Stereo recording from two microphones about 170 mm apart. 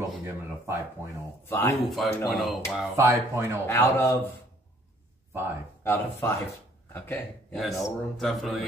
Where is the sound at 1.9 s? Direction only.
Centre (ahead or behind).